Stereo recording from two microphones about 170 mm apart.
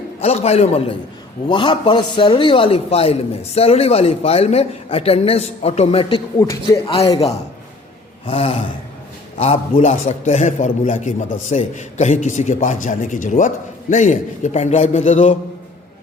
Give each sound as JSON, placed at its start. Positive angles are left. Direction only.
{"t": 0.2, "sound": "a man's voice", "side_deg": 35}
{"t": 6.7, "sound": "a man's voice", "side_deg": 35}
{"t": 8.3, "sound": "a man's voice", "side_deg": 35}